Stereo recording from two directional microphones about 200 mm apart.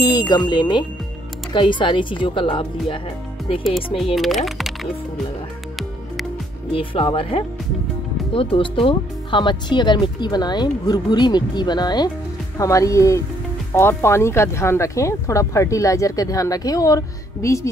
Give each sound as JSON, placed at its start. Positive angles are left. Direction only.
{"t": 0.3, "sound": "speech", "side_deg": 20}
{"t": 4.0, "sound": "speech", "side_deg": 0}
{"t": 6.7, "sound": "speech", "side_deg": 25}